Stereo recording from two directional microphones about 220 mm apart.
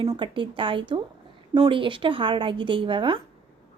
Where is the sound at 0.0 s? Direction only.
20° right (ahead or behind).